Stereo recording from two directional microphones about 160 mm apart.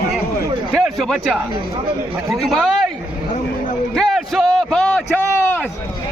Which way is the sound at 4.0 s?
Centre (ahead or behind).